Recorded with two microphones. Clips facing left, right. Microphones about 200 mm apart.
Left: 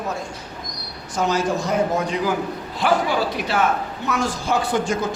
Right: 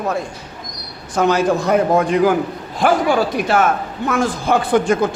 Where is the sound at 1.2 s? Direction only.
60° right (ahead or behind).